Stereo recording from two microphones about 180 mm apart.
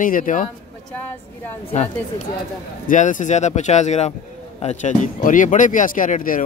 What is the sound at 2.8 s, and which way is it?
Speech, 45° left (ahead or behind).